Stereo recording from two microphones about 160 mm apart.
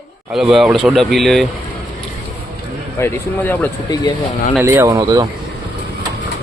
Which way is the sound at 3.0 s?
15° left (ahead or behind).